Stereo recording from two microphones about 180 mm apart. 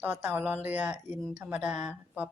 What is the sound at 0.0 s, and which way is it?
Speech, 10° right (ahead or behind).